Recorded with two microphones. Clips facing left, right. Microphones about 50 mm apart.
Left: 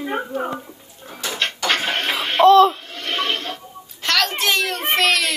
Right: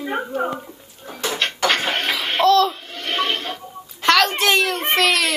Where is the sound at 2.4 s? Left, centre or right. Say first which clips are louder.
Left 4 dB; left.